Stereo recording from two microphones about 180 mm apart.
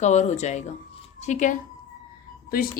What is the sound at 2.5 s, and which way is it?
Speech, 55° left (ahead or behind).